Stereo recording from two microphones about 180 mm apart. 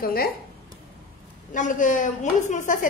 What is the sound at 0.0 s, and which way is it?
Speech, 55° left (ahead or behind).